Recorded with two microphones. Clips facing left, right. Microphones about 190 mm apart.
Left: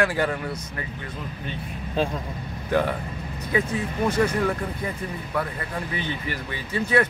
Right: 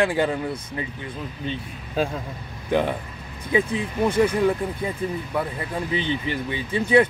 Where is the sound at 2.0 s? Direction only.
5° right (ahead or behind).